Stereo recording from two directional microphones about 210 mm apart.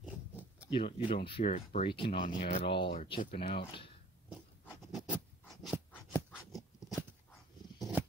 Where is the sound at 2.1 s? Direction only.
35° left (ahead or behind).